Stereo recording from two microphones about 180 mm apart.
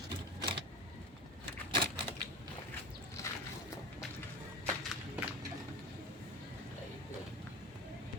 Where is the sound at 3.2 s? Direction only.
15° left (ahead or behind).